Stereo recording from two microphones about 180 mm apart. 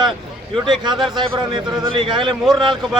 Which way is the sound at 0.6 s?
25° right (ahead or behind).